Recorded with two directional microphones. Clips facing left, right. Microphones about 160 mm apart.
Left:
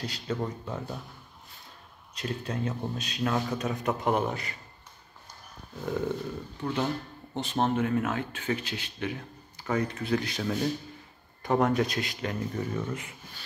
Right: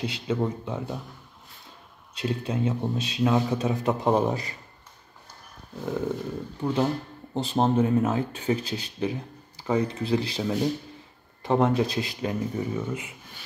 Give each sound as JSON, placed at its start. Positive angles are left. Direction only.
{"t": 0.0, "sound": "speech", "side_deg": -20}
{"t": 2.1, "sound": "a man's voice", "side_deg": -25}
{"t": 3.5, "sound": "a man's voice", "side_deg": -25}
{"t": 6.6, "sound": "speech", "side_deg": -10}
{"t": 7.3, "sound": "a man's voice", "side_deg": -30}
{"t": 10.4, "sound": "a man's voice", "side_deg": -20}
{"t": 12.2, "sound": "speech", "side_deg": -15}